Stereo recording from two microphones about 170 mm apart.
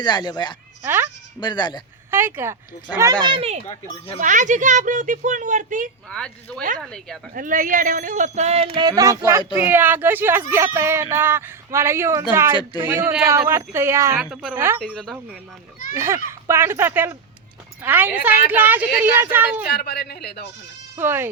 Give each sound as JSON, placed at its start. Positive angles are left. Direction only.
{"t": 0.0, "sound": "speech", "side_deg": 25}
{"t": 2.0, "sound": "a woman's voice", "side_deg": -15}
{"t": 3.7, "sound": "speech", "side_deg": 35}
{"t": 4.2, "sound": "speech", "side_deg": -50}
{"t": 6.1, "sound": "speech", "side_deg": 5}
{"t": 7.3, "sound": "speech", "side_deg": -50}
{"t": 8.8, "sound": "a child's voice", "side_deg": -20}
{"t": 14.2, "sound": "speech", "side_deg": 0}
{"t": 14.5, "sound": "a woman's voice", "side_deg": -15}
{"t": 14.8, "sound": "speech", "side_deg": 0}
{"t": 16.0, "sound": "a woman's voice", "side_deg": -15}
{"t": 19.7, "sound": "speech", "side_deg": 70}
{"t": 20.9, "sound": "a woman's voice", "side_deg": -15}